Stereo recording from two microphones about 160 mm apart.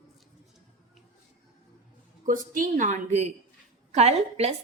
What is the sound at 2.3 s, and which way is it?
A woman's voice, 55° right (ahead or behind).